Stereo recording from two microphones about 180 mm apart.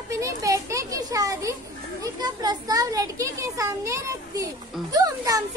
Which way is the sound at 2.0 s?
20° right (ahead or behind).